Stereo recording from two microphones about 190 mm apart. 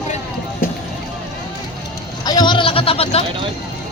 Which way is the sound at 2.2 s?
20° left (ahead or behind).